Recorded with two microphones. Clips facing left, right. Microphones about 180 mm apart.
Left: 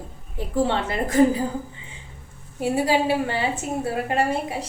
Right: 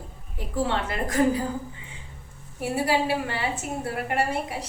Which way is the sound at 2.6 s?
25° left (ahead or behind).